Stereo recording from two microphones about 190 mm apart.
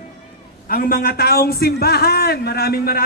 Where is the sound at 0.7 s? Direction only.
50° left (ahead or behind).